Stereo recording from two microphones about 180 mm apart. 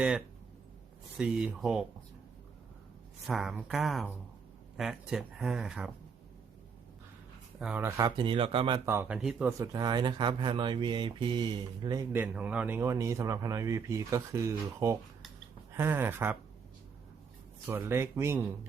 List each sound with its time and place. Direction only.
1.1 s speech: 5° right (ahead or behind)
3.2 s speech: centre (ahead or behind)
7.6 s speech: 10° right (ahead or behind); by 8.8 s 30° right (ahead or behind)
8.9 s speech: 10° right (ahead or behind)
9.5 s speech: 20° right (ahead or behind)
12.1 s speech: 10° right (ahead or behind)
17.7 s speech: 15° right (ahead or behind)